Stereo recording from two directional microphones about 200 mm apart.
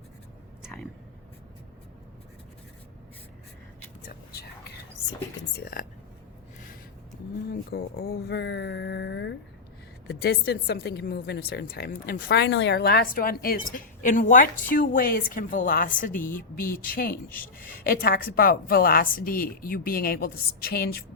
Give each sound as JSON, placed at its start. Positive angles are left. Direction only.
{"t": 4.3, "sound": "whispering", "side_deg": 55}
{"t": 5.5, "sound": "a woman's voice", "side_deg": 45}
{"t": 7.7, "sound": "a woman's voice", "side_deg": 50}